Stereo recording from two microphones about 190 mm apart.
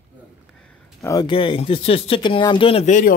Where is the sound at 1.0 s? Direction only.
25° left (ahead or behind).